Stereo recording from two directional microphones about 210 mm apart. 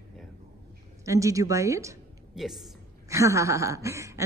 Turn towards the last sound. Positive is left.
turn(degrees=-15)  # may be behind; listen again after turning